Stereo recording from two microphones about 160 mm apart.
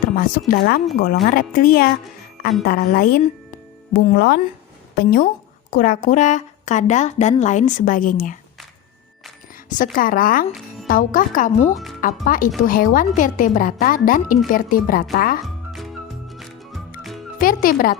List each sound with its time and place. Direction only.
0.2 s a woman's voice: 65° left (ahead or behind); by 4.4 s 80° left
4.9 s a woman's voice: 65° left (ahead or behind)
9.6 s a woman's voice: 55° left (ahead or behind)
11.5 s speech: 40° left (ahead or behind)
12.2 s a woman's voice: 55° left (ahead or behind)
15.7 s music: centre (ahead or behind)
17.3 s speech: 65° left (ahead or behind)